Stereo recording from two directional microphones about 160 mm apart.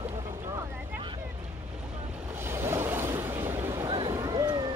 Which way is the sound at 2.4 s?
15° right (ahead or behind).